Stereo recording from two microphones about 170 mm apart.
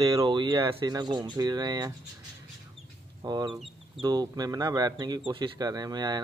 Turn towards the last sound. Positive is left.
turn(degrees=-25)  # may be behind; listen again after turning